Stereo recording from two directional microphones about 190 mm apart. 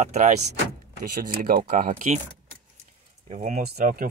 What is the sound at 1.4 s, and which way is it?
Speech, 50° right (ahead or behind).